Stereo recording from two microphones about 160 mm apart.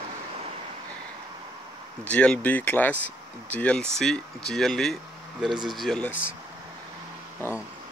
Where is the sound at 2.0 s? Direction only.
5° left (ahead or behind).